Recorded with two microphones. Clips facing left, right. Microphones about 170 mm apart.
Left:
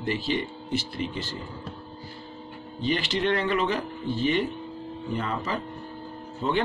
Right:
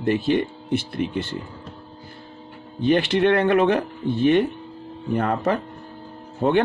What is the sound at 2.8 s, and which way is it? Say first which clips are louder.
Speech: right 8 dB; 55° right (ahead or behind).